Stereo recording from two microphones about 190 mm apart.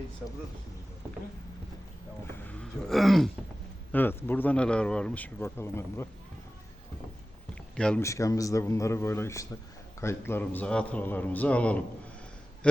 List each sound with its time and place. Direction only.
2.5 s a sound: 5° left (ahead or behind)
3.9 s speech: 10° left (ahead or behind)
7.8 s speech: 5° left (ahead or behind)
8.0 s speech: 15° left (ahead or behind)